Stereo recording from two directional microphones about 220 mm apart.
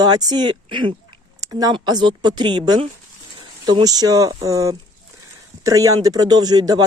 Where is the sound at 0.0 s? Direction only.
20° right (ahead or behind).